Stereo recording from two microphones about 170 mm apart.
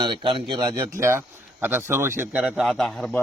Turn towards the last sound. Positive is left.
turn(degrees=5)  # may be behind; listen again after turning